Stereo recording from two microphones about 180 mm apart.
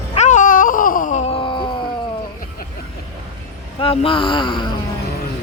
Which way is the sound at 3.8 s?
30° left (ahead or behind).